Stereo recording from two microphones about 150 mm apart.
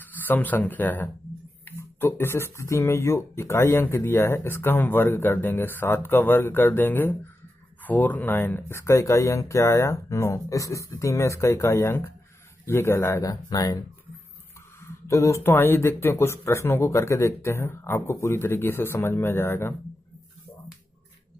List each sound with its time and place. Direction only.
0.0 s speech: 10° left (ahead or behind)
14.9 s speech: 20° left (ahead or behind)